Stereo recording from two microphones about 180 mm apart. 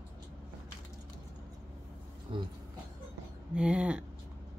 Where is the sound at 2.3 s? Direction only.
30° right (ahead or behind).